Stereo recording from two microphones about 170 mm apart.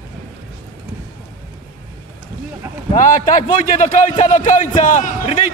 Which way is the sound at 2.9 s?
50° left (ahead or behind).